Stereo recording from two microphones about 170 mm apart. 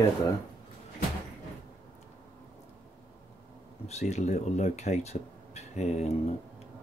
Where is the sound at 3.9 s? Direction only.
40° left (ahead or behind).